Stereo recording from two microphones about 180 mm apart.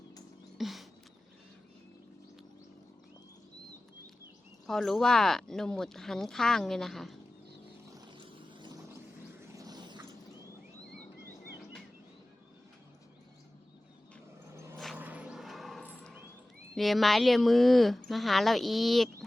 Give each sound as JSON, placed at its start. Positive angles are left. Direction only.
{"t": 0.6, "sound": "music", "side_deg": 0}
{"t": 4.6, "sound": "speech", "side_deg": 0}
{"t": 7.9, "sound": "vehicle", "side_deg": -20}
{"t": 9.5, "sound": "a sound", "side_deg": -20}
{"t": 14.5, "sound": "a sound", "side_deg": -15}
{"t": 16.7, "sound": "speech", "side_deg": 0}